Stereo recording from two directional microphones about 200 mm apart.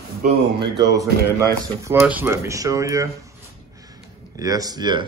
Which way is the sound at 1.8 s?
10° right (ahead or behind).